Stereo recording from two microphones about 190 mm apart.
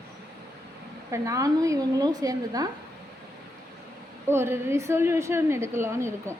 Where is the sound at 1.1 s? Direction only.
15° right (ahead or behind).